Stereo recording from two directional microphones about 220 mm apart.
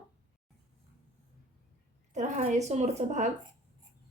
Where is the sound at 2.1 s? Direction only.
35° right (ahead or behind).